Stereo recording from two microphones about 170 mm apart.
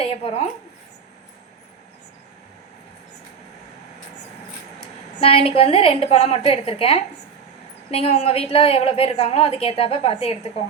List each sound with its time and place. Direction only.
0.0 s speech: 35° left (ahead or behind)
5.2 s a woman's voice: 35° left (ahead or behind)